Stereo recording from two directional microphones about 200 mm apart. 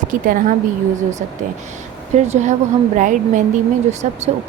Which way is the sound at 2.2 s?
35° right (ahead or behind).